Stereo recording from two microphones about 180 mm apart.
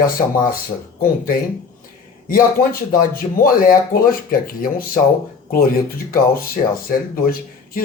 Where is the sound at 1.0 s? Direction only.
55° left (ahead or behind).